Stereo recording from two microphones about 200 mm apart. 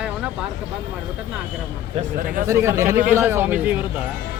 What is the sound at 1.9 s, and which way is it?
Speech, 40° right (ahead or behind).